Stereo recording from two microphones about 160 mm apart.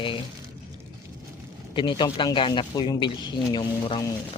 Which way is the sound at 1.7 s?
30° left (ahead or behind).